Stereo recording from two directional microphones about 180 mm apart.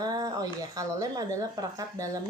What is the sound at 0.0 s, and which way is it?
Speech, 20° right (ahead or behind).